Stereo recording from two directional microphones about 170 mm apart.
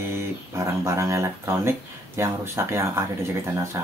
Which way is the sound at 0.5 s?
15° right (ahead or behind).